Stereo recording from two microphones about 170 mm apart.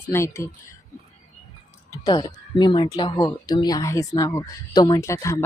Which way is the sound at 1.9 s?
25° left (ahead or behind).